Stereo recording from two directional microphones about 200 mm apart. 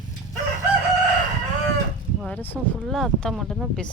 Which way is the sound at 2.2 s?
5° left (ahead or behind).